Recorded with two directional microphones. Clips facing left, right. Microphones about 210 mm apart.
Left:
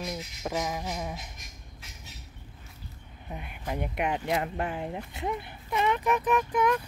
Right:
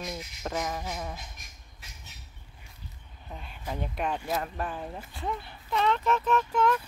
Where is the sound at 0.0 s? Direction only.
5° left (ahead or behind).